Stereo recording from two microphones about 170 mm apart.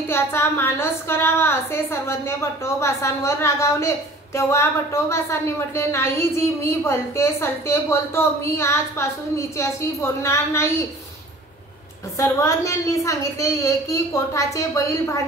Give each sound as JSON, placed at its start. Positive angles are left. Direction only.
{"t": 0.1, "sound": "a woman's voice", "side_deg": 15}
{"t": 12.2, "sound": "a woman's voice", "side_deg": 20}